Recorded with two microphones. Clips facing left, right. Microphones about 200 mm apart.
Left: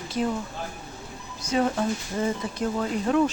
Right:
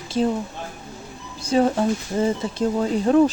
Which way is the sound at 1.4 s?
30° right (ahead or behind).